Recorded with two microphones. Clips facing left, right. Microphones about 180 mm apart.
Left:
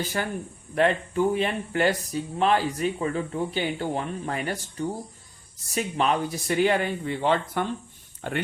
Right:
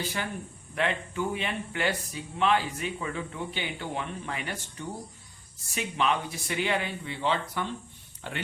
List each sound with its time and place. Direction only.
0.2 s speech: 45° left (ahead or behind)